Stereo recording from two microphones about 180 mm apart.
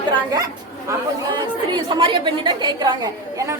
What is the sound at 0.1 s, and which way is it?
Speech, 20° right (ahead or behind).